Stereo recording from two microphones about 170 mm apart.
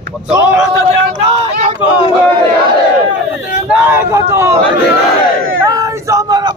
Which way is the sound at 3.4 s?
10° right (ahead or behind).